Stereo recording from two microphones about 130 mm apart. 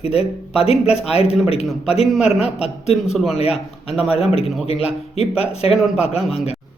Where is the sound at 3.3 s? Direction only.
50° left (ahead or behind).